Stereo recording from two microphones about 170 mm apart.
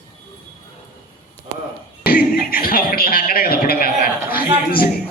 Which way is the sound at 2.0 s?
60° left (ahead or behind).